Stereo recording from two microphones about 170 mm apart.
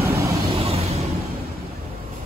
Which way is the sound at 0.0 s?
15° right (ahead or behind).